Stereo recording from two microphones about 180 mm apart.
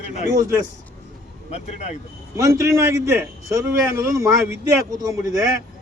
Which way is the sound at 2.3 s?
15° right (ahead or behind).